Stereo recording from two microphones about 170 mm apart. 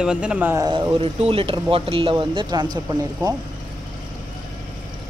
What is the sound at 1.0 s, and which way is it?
Speech, 35° right (ahead or behind).